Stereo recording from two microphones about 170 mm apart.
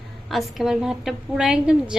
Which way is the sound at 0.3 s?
Centre (ahead or behind).